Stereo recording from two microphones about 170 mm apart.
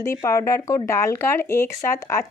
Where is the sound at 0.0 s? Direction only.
15° left (ahead or behind).